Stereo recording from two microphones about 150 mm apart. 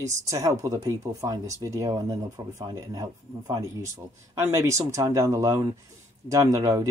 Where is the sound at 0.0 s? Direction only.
20° right (ahead or behind).